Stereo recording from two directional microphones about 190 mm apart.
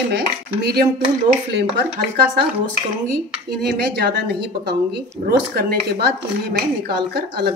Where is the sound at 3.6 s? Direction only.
60° right (ahead or behind).